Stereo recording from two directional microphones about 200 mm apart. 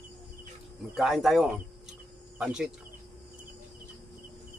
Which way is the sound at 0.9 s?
Centre (ahead or behind).